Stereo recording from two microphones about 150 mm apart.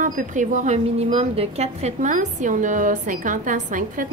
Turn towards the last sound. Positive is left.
turn(degrees=-60)  # may be behind; listen again after turning